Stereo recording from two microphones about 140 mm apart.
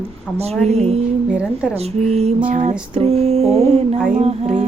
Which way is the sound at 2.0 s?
45° right (ahead or behind).